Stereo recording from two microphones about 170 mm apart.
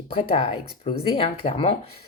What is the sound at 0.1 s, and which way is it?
A woman's voice, 30° left (ahead or behind).